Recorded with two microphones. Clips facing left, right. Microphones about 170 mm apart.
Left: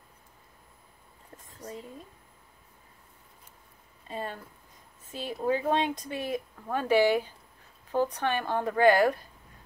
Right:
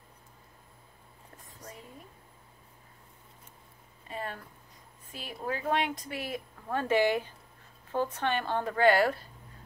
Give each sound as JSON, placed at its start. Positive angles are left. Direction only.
{"t": 4.1, "sound": "speech", "side_deg": 20}
{"t": 5.4, "sound": "speech", "side_deg": 20}